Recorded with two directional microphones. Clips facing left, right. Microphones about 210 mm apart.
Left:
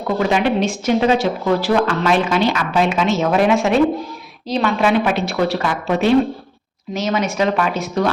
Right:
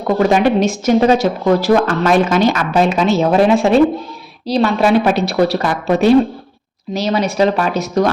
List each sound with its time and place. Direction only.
0.2 s a woman's voice: 45° right (ahead or behind)